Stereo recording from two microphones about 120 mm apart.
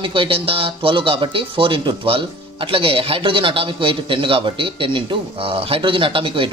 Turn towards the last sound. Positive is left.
turn(degrees=-45)  # may be behind; listen again after turning